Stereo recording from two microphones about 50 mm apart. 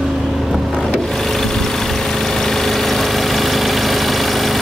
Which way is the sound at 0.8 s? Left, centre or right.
Centre.